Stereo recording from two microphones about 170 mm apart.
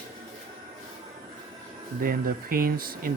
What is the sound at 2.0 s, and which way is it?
Speech, 60° right (ahead or behind).